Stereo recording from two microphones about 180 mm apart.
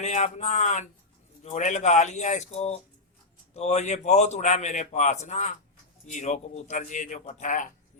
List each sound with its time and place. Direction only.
0.0 s a man's voice: 40° left (ahead or behind)